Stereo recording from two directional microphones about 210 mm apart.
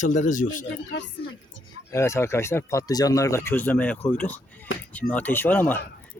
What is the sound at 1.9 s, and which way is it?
Speech, 15° left (ahead or behind).